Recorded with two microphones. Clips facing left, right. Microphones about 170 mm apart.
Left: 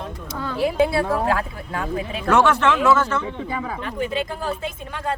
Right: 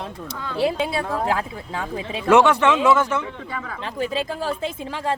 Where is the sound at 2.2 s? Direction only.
15° right (ahead or behind).